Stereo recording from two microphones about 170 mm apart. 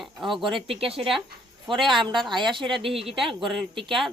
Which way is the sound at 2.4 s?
30° right (ahead or behind).